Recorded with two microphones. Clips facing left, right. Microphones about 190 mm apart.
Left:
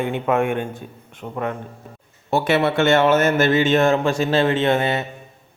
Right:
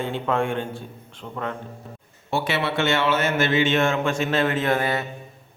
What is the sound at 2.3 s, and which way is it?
A man's voice, 45° left (ahead or behind).